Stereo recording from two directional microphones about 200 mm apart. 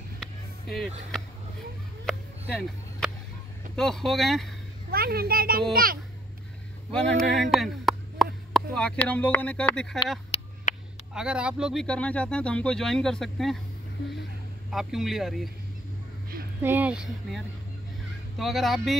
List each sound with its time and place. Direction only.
0.2 s a sound: centre (ahead or behind)
3.7 s speech: 5° left (ahead or behind)
4.9 s a child's voice: 50° right (ahead or behind)
6.9 s speech: 5° left (ahead or behind)
10.3 s a sound: 30° left (ahead or behind)
11.1 s speech: 5° right (ahead or behind)
14.7 s speech: centre (ahead or behind)
16.6 s speech: 10° right (ahead or behind)
18.4 s speech: centre (ahead or behind)